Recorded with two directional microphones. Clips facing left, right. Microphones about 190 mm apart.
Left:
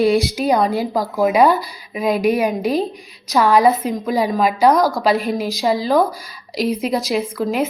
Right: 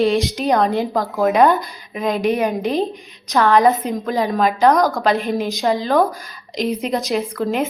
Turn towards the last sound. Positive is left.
turn(degrees=0)  # may be behind; listen again after turning